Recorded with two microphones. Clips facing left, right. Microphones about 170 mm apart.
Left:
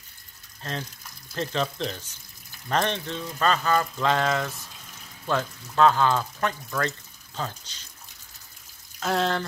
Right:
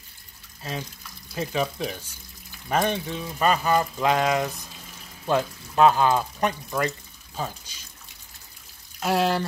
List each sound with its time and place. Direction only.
0.6 s speech: 10° right (ahead or behind)
9.0 s speech: 10° right (ahead or behind)